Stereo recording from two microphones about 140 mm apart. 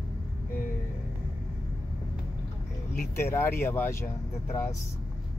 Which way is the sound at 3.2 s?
15° left (ahead or behind).